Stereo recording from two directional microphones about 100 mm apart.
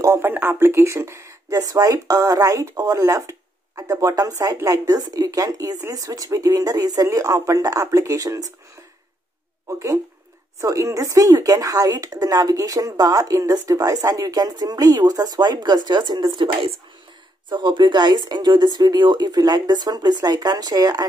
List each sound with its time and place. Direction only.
0.0 s speech: 35° right (ahead or behind)
0.3 s speech: 20° right (ahead or behind)
9.7 s speech: 30° right (ahead or behind)